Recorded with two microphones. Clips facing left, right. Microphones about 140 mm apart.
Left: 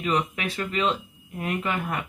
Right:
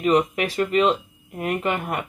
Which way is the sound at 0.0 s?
40° right (ahead or behind).